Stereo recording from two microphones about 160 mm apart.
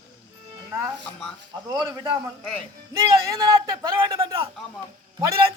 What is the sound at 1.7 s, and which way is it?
Speech, 25° right (ahead or behind).